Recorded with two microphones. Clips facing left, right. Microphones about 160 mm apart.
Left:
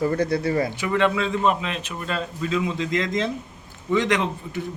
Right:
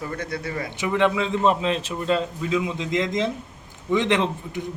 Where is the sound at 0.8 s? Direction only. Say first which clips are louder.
Even; 15° right (ahead or behind).